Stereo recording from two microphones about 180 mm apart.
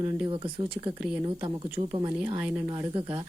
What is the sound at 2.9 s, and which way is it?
Speech, 30° right (ahead or behind).